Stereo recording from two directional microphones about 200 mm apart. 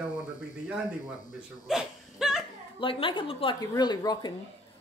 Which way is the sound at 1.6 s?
Centre (ahead or behind).